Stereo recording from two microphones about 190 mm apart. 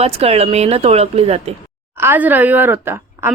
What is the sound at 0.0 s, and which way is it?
Speech, 30° right (ahead or behind).